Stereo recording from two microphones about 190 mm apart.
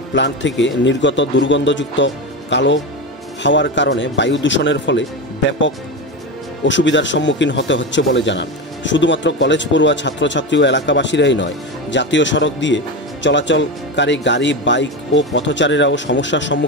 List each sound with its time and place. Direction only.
0.1 s a man's voice: 70° left (ahead or behind)
6.6 s a man's voice: 75° left (ahead or behind)